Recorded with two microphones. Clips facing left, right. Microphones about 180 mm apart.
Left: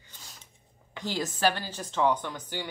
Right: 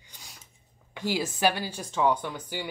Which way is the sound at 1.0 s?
10° right (ahead or behind).